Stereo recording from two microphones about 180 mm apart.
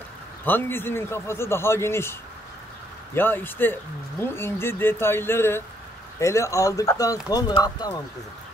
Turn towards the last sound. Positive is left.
turn(degrees=20)  # may be behind; listen again after turning